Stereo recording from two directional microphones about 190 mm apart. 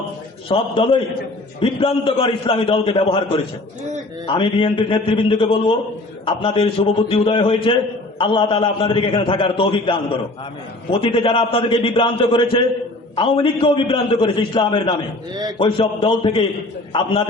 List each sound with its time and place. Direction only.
0.4 s a man's voice: 25° left (ahead or behind)
11.0 s a man's voice: 25° left (ahead or behind)